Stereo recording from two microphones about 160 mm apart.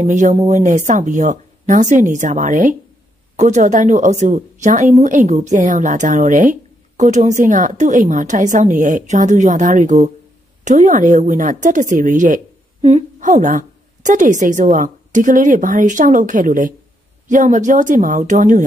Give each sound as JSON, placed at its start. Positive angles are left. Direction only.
{"t": 0.0, "sound": "a woman's voice", "side_deg": -50}